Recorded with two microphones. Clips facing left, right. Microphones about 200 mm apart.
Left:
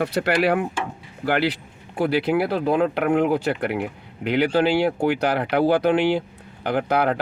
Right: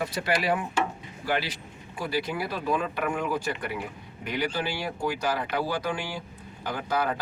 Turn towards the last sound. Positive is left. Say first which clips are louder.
# left 7 dB
turn(degrees=65)  # may be behind; listen again after turning